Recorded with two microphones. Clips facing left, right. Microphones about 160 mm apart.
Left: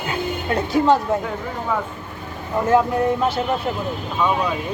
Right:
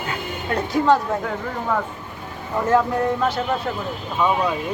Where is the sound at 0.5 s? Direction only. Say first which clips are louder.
Left 1 dB; 25° left (ahead or behind).